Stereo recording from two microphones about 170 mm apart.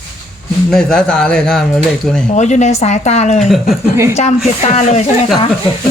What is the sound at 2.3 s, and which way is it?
Speech, 45° left (ahead or behind).